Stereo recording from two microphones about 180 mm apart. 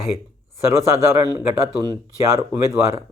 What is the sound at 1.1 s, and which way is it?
Speech, 20° right (ahead or behind).